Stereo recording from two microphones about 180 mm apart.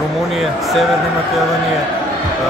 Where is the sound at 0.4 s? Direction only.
Centre (ahead or behind).